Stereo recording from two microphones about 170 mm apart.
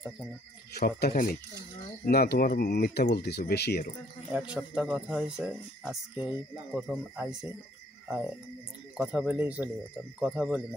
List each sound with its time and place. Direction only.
0.7 s speech: 65° left (ahead or behind)
4.3 s speech: 5° right (ahead or behind)
8.9 s speech: 5° right (ahead or behind)